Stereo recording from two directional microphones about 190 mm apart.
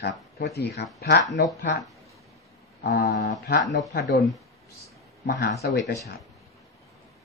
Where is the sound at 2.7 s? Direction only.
55° left (ahead or behind).